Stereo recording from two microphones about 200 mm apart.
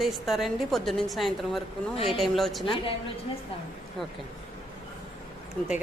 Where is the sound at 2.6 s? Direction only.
25° left (ahead or behind).